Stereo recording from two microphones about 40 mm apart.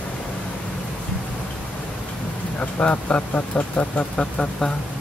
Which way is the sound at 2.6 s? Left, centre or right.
Left.